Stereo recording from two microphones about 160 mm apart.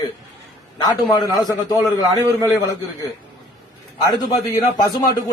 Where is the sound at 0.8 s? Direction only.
25° left (ahead or behind).